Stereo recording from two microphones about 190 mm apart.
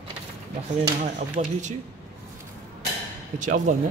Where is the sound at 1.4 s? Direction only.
40° right (ahead or behind).